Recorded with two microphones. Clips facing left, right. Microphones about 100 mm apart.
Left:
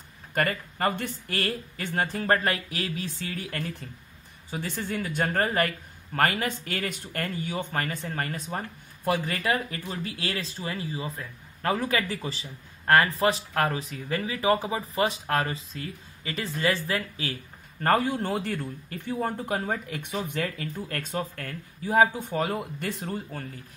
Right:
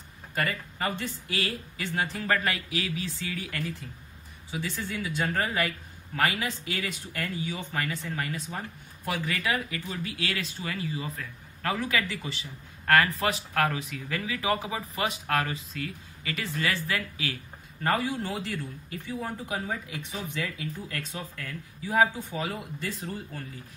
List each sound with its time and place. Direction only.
0.3 s speech: 50° left (ahead or behind); by 17.4 s 30° left (ahead or behind)
17.8 s speech: 50° left (ahead or behind)